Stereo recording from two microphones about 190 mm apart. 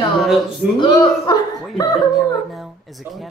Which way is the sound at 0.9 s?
20° left (ahead or behind).